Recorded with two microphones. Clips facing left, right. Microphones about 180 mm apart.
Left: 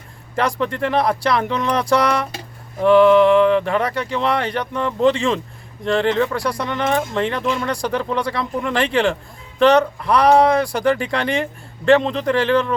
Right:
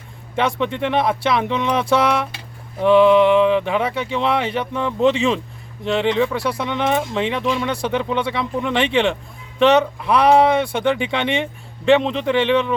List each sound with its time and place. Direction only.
0.3 s speech: centre (ahead or behind)